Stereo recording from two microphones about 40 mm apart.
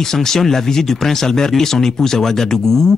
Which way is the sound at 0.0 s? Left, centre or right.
Centre.